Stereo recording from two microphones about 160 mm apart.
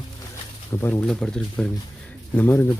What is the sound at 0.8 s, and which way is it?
Speech, 10° left (ahead or behind).